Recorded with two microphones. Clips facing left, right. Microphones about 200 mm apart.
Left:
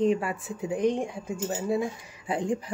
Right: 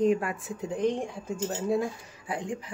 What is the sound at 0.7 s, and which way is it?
Speech, 15° left (ahead or behind).